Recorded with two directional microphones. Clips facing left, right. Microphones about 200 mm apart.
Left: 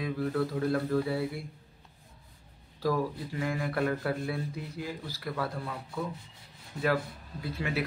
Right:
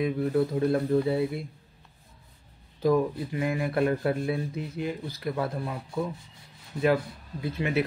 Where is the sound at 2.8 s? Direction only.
20° right (ahead or behind).